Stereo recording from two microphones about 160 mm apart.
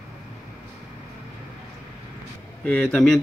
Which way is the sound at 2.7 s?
5° left (ahead or behind).